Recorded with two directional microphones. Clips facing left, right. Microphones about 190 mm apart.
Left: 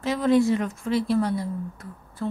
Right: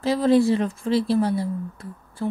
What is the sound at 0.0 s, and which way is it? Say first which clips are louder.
A woman's voice: right 2 dB; 35° right (ahead or behind).